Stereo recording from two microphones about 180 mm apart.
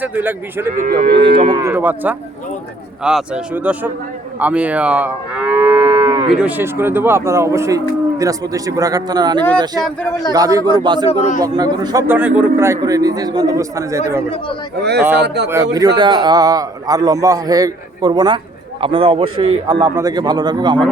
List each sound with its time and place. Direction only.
0.0 s speech: 10° right (ahead or behind)
0.8 s speech: 45° right (ahead or behind)
1.4 s speech: 25° right (ahead or behind)
4.4 s livestock: 10° right (ahead or behind)
6.3 s a man's voice: 5° right (ahead or behind); by 11.1 s 25° right (ahead or behind)
11.1 s a man's voice: 35° left (ahead or behind)
11.3 s a man's voice: 20° right (ahead or behind)
14.8 s speech: 65° right (ahead or behind)
15.4 s a man's voice: 15° right (ahead or behind)